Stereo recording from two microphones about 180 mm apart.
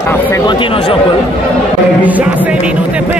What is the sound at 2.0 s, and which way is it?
Speech, 10° right (ahead or behind).